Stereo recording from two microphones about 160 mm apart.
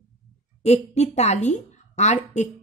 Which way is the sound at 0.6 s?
45° left (ahead or behind).